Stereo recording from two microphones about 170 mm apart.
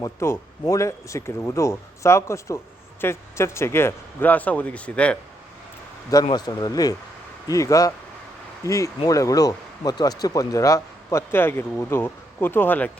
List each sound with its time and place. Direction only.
0.0 s speech: 15° left (ahead or behind)
6.2 s speech: 25° left (ahead or behind)